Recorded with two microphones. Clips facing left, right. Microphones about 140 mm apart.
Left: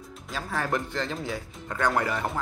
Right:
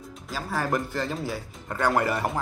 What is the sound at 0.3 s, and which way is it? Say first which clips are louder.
Speech: right 2 dB; 5° right (ahead or behind).